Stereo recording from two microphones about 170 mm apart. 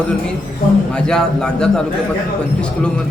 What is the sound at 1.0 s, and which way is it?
Speech, 5° left (ahead or behind).